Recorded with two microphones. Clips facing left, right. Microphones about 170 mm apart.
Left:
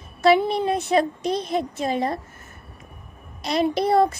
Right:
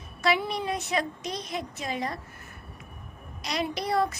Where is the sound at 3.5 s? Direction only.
30° left (ahead or behind).